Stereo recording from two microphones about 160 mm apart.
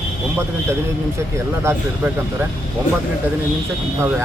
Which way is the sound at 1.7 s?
15° right (ahead or behind).